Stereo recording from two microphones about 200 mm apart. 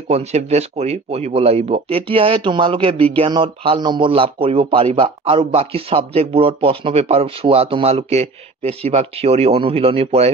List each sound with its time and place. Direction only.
0.1 s speech: 35° right (ahead or behind)